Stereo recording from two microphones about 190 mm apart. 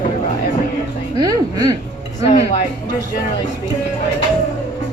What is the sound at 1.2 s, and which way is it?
Music, 20° right (ahead or behind).